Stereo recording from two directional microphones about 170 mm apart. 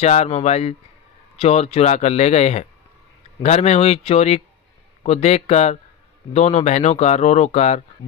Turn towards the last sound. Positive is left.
turn(degrees=40)  # may be behind; listen again after turning